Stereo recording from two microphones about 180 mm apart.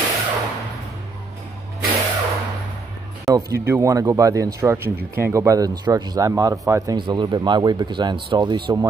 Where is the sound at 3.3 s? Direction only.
15° right (ahead or behind).